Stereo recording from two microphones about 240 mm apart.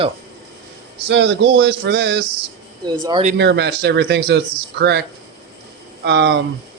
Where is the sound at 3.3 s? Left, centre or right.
Right.